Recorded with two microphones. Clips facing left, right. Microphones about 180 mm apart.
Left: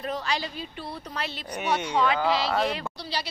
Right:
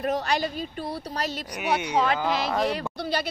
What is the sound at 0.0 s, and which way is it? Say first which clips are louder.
Speech: right 5 dB; 50° right (ahead or behind).